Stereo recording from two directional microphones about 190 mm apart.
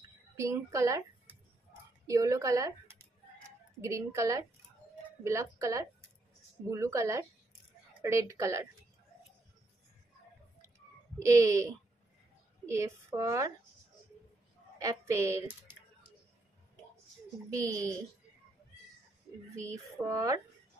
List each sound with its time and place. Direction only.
0.4 s a woman's voice: 15° right (ahead or behind)
2.0 s a sound: 15° right (ahead or behind)
5.2 s speech: 15° right (ahead or behind)
11.1 s speech: 15° right (ahead or behind)
14.8 s speech: 15° right (ahead or behind)
17.5 s speech: 15° right (ahead or behind)
19.5 s speech: 15° right (ahead or behind)